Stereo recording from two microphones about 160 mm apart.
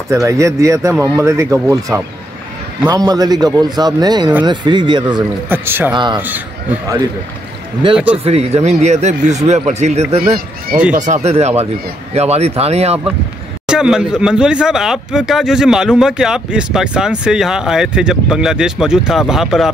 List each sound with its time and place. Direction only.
0.1 s speech: 20° right (ahead or behind)
5.5 s speech: 15° right (ahead or behind)
7.9 s speech: 10° right (ahead or behind)
8.2 s speech: 40° right (ahead or behind)
10.2 s speech: 65° right (ahead or behind)
11.0 s speech: 45° right (ahead or behind)
13.7 s speech: 5° right (ahead or behind)